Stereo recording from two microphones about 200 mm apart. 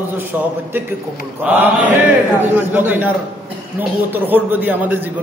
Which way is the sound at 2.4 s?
10° right (ahead or behind).